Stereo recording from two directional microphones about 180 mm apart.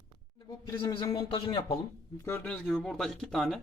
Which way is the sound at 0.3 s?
20° left (ahead or behind).